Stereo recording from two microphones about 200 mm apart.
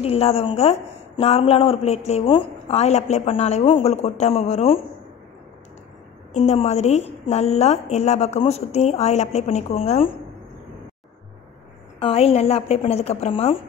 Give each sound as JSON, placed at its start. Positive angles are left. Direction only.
{"t": 0.0, "sound": "a woman's voice", "side_deg": 30}
{"t": 6.3, "sound": "a woman's voice", "side_deg": 35}
{"t": 12.0, "sound": "a woman's voice", "side_deg": 30}